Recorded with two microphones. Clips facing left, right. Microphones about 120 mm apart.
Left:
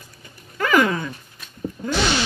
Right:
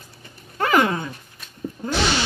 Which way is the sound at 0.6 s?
30° right (ahead or behind).